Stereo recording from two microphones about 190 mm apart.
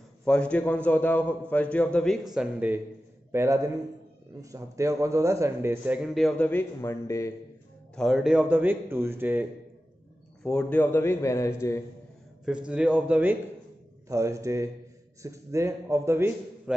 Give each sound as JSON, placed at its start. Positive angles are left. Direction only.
{"t": 0.2, "sound": "a man's voice", "side_deg": 5}
{"t": 7.9, "sound": "a man's voice", "side_deg": 0}
{"t": 10.4, "sound": "a man's voice", "side_deg": 5}
{"t": 12.4, "sound": "a man's voice", "side_deg": -5}